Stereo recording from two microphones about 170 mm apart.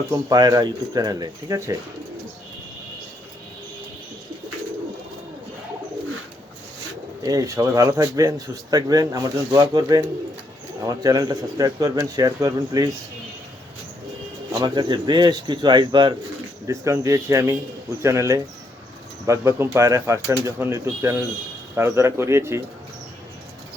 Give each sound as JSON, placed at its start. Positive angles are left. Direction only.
{"t": 0.1, "sound": "speech", "side_deg": -20}
{"t": 7.2, "sound": "speech", "side_deg": -20}
{"t": 14.5, "sound": "speech", "side_deg": -25}